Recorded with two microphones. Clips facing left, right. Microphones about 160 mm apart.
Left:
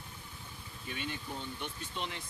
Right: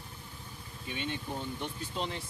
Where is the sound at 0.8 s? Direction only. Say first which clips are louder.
Right 3 dB; 25° right (ahead or behind).